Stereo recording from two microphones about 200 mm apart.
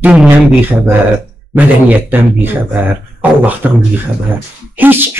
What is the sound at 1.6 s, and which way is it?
Speech, 10° right (ahead or behind).